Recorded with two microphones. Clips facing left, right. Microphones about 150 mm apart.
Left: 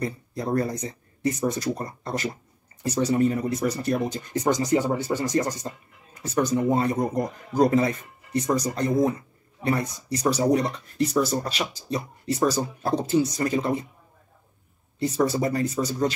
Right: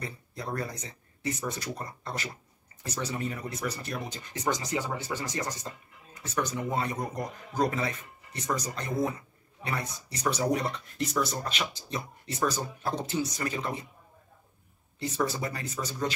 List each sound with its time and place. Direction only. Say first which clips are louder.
0.0 s a man's voice: left 9 dB; 40° left (ahead or behind)
15.0 s a man's voice: left 7 dB; 40° left (ahead or behind)